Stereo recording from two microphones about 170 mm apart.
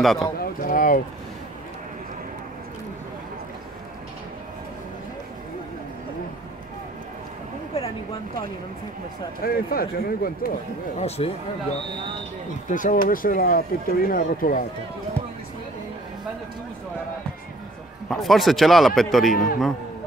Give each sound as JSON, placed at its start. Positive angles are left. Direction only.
{"t": 0.0, "sound": "a man's voice", "side_deg": 0}
{"t": 0.4, "sound": "speech", "side_deg": 60}
{"t": 9.4, "sound": "speech", "side_deg": 60}
{"t": 11.0, "sound": "speech", "side_deg": 35}
{"t": 12.6, "sound": "speech", "side_deg": 50}
{"t": 18.1, "sound": "a man's voice", "side_deg": 0}
{"t": 19.3, "sound": "speech", "side_deg": 55}